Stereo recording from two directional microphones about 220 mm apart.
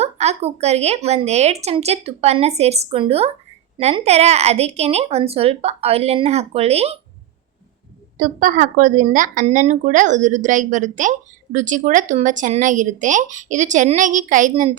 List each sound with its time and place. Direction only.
0.0 s a woman's voice: 30° right (ahead or behind)
8.2 s speech: 40° right (ahead or behind)